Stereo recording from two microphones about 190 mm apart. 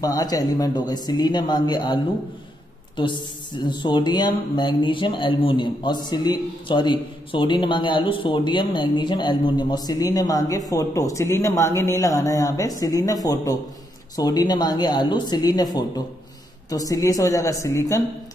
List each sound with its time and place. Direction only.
0.0 s speech: 20° left (ahead or behind)
3.0 s speech: 25° left (ahead or behind)